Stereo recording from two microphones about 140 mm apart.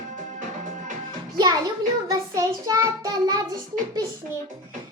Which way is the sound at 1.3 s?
30° right (ahead or behind).